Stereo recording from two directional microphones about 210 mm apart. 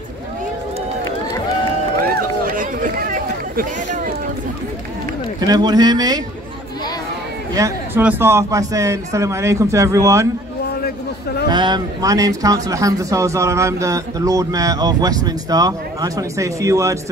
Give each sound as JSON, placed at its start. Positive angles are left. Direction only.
{"t": 2.5, "sound": "a sound", "side_deg": -40}
{"t": 5.5, "sound": "speech", "side_deg": -20}
{"t": 7.5, "sound": "a man's voice", "side_deg": -10}
{"t": 11.4, "sound": "a man's voice", "side_deg": -20}